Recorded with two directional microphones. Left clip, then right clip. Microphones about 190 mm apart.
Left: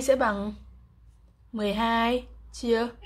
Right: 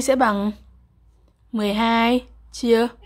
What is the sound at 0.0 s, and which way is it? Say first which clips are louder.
A woman's voice: right 5 dB; 30° right (ahead or behind).